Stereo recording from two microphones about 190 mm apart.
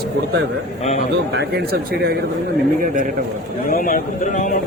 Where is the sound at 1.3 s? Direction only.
55° right (ahead or behind).